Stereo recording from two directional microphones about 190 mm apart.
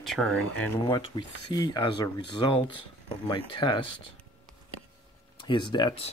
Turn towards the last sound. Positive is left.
turn(degrees=25)  # may be behind; listen again after turning